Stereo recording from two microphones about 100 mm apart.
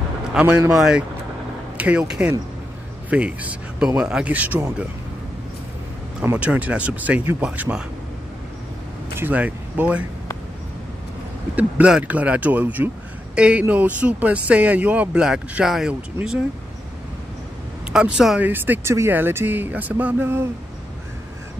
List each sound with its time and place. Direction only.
0.3 s a man's voice: 10° right (ahead or behind)
6.3 s a man's voice: 15° right (ahead or behind)
9.2 s speech: 15° right (ahead or behind)
11.5 s a man's voice: 15° right (ahead or behind)
17.9 s a man's voice: 5° right (ahead or behind)
18.5 s speech: 20° right (ahead or behind)